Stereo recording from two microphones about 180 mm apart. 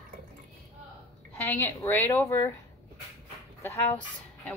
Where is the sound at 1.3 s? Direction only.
10° left (ahead or behind).